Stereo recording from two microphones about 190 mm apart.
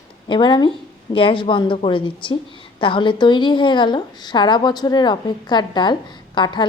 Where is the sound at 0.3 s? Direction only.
25° left (ahead or behind).